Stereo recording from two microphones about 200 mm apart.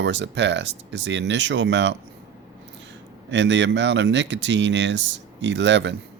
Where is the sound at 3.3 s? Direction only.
65° right (ahead or behind).